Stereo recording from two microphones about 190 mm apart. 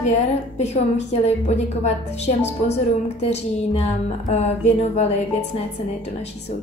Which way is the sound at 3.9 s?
35° left (ahead or behind).